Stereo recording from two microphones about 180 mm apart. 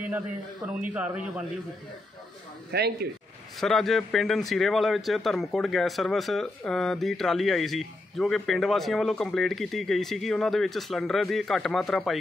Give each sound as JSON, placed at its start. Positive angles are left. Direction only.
{"t": 0.7, "sound": "a man's voice", "side_deg": -5}
{"t": 2.7, "sound": "speech", "side_deg": -65}
{"t": 3.5, "sound": "speech", "side_deg": 0}